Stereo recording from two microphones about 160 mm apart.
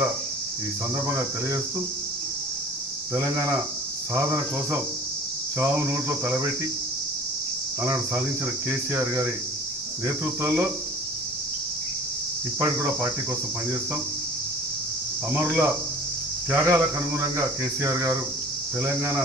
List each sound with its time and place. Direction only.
1.0 s speech: 15° right (ahead or behind)
4.1 s speech: 15° right (ahead or behind)
7.8 s speech: 15° right (ahead or behind)
12.5 s speech: 15° right (ahead or behind)
15.3 s speech: 10° right (ahead or behind)